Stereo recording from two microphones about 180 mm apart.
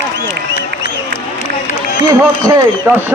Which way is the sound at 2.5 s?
20° right (ahead or behind).